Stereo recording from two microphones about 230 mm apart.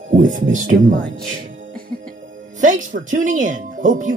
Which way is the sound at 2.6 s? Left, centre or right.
Right.